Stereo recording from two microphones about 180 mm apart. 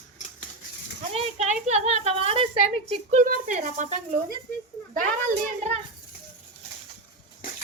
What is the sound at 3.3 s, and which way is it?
Speech, 45° right (ahead or behind).